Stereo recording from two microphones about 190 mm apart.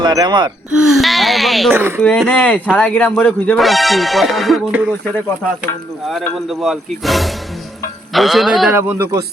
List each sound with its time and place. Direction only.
0.0 s speech: 20° right (ahead or behind)
0.7 s speech: centre (ahead or behind)
1.7 s speech: 10° right (ahead or behind)
2.0 s speech: 5° left (ahead or behind)
6.5 s speech: centre (ahead or behind)
8.7 s speech: 10° right (ahead or behind)